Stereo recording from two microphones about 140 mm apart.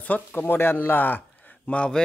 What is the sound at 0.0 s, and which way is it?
Speech, 10° left (ahead or behind).